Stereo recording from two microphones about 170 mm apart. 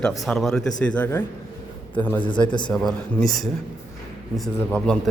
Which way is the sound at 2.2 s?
25° left (ahead or behind).